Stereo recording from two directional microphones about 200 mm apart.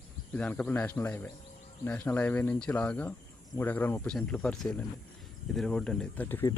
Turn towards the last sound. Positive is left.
turn(degrees=10)  # may be behind; listen again after turning